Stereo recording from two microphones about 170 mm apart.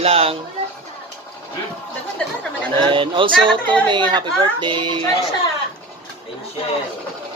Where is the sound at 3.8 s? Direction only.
25° right (ahead or behind).